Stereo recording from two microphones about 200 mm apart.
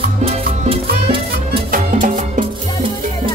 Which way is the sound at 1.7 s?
40° right (ahead or behind).